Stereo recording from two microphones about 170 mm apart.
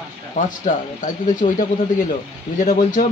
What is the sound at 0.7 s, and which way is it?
Speech, 50° left (ahead or behind).